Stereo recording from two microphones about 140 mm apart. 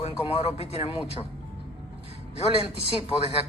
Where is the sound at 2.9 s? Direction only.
45° left (ahead or behind).